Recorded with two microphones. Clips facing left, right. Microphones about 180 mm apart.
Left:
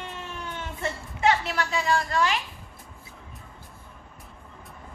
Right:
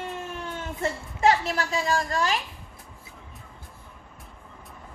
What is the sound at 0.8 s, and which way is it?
A woman's voice, 40° right (ahead or behind).